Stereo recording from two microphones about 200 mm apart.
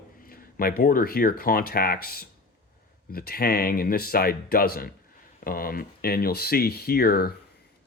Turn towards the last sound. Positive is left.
turn(degrees=50)  # may be behind; listen again after turning